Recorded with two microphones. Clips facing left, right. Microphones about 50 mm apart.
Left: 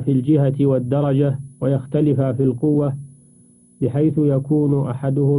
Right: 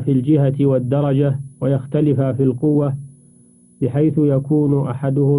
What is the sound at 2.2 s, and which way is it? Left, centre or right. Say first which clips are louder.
Speech: right 1 dB; right.